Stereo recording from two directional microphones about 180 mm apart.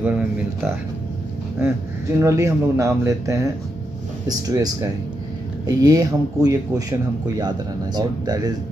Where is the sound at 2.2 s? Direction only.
15° right (ahead or behind).